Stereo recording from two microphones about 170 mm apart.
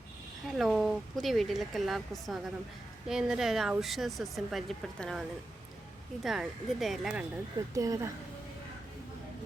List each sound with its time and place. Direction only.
0.5 s speech: centre (ahead or behind)
6.2 s speech: centre (ahead or behind)
7.7 s speech: 20° right (ahead or behind)